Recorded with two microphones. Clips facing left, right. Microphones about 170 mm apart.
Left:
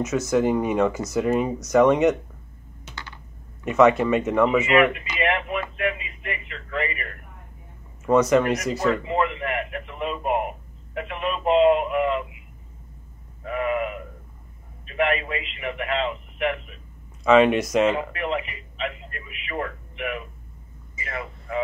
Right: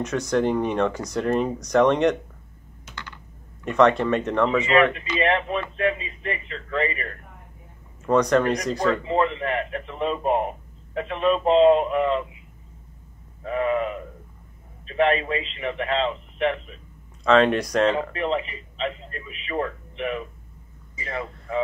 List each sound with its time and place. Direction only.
0.0 s speech: 5° left (ahead or behind)
3.6 s speech: 5° left (ahead or behind)
4.9 s a man's voice: 30° right (ahead or behind)
8.0 s speech: 5° left (ahead or behind)
8.8 s a man's voice: 30° right (ahead or behind)
13.4 s a man's voice: 30° right (ahead or behind)
17.2 s speech: 10° left (ahead or behind)
18.1 s a man's voice: 30° right (ahead or behind)